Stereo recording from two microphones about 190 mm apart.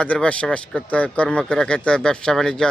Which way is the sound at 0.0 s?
5° left (ahead or behind).